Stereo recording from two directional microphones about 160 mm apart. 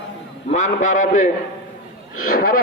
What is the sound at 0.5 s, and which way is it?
Speech, 50° left (ahead or behind).